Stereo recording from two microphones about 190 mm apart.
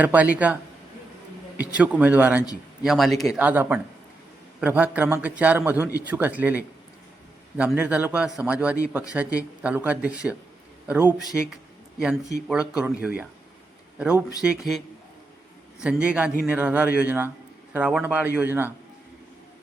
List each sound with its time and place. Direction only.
0.0 s a man's voice: 10° right (ahead or behind)
15.8 s a man's voice: 5° right (ahead or behind)